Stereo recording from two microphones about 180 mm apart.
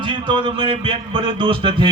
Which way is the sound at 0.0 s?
30° right (ahead or behind).